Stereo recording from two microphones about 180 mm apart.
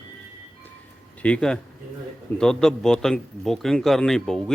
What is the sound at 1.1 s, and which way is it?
A man's voice, 5° left (ahead or behind).